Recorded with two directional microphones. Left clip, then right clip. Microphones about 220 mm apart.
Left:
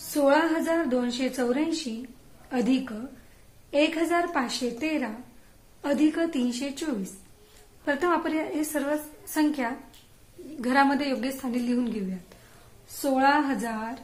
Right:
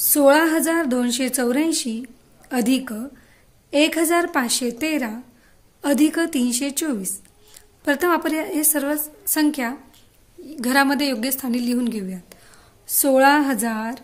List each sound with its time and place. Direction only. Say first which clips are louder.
0.1 s a woman's voice: right 7 dB; 55° right (ahead or behind)